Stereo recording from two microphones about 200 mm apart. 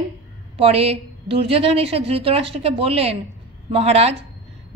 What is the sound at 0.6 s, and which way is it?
A woman's voice, 30° right (ahead or behind).